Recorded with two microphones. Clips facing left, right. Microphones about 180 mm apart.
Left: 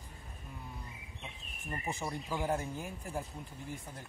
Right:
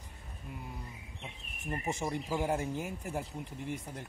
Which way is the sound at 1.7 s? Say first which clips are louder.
Right 4 dB; 20° right (ahead or behind).